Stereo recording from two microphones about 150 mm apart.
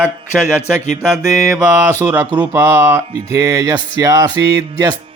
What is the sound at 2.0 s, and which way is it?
Speech, 20° right (ahead or behind).